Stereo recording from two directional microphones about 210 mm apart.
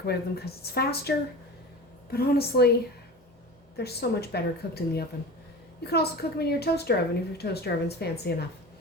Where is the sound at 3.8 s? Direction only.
50° left (ahead or behind).